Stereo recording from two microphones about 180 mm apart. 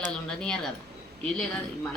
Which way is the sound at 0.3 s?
5° left (ahead or behind).